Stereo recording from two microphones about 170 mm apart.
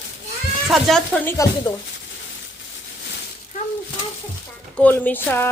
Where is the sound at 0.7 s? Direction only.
Centre (ahead or behind).